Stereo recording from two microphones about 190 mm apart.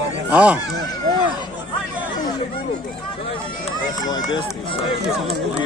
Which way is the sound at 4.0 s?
20° left (ahead or behind).